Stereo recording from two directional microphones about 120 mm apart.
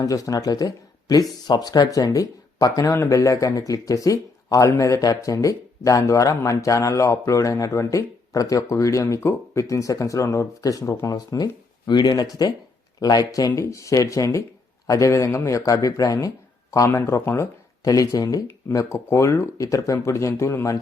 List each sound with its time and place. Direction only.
0.0 s speech: 30° left (ahead or behind)